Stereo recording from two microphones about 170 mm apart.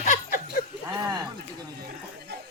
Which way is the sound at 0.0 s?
50° left (ahead or behind).